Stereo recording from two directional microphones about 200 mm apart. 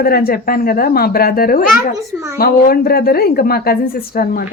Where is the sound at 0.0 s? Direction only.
50° left (ahead or behind).